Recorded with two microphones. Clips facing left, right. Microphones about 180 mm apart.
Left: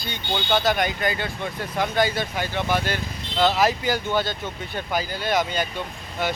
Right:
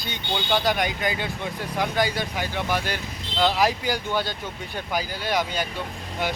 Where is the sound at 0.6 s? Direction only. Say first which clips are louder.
Left 2 dB; 10° right (ahead or behind).